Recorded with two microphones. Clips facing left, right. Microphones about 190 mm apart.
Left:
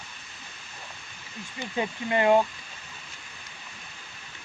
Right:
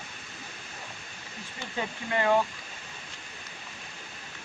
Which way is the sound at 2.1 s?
20° left (ahead or behind).